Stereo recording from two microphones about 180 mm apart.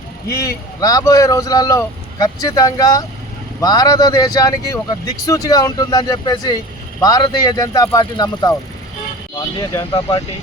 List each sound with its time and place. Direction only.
0.3 s speech: 20° left (ahead or behind)
9.6 s speech: 25° left (ahead or behind)